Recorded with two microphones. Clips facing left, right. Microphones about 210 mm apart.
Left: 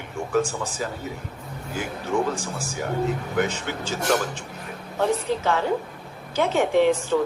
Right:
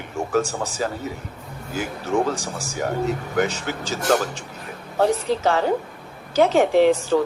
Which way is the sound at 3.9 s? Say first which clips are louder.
Right 3 dB; 40° right (ahead or behind).